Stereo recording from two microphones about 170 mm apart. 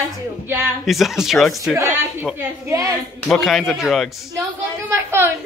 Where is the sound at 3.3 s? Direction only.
Centre (ahead or behind).